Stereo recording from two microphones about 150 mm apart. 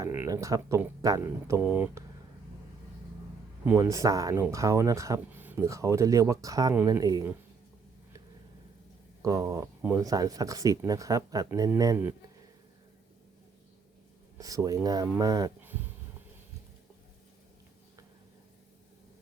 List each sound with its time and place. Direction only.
0.0 s speech: 20° right (ahead or behind)
3.7 s speech: 20° right (ahead or behind)
9.2 s speech: 20° right (ahead or behind)
14.3 s speech: 25° right (ahead or behind)